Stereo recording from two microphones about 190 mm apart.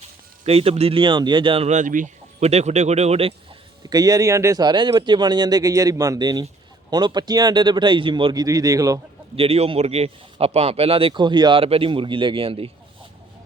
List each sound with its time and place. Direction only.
0.0 s speech: 30° right (ahead or behind)
3.8 s a man's voice: 20° right (ahead or behind)
9.3 s a man's voice: 30° right (ahead or behind)